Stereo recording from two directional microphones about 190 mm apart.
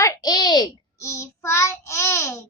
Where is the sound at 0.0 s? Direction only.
20° left (ahead or behind).